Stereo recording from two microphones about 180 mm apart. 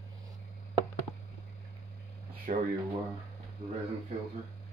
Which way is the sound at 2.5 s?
45° right (ahead or behind).